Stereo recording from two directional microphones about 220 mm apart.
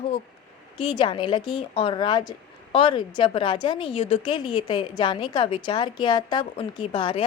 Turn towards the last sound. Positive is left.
turn(degrees=25)  # may be behind; listen again after turning